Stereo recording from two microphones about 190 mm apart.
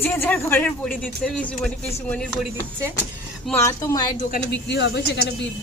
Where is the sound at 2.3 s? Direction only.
10° right (ahead or behind).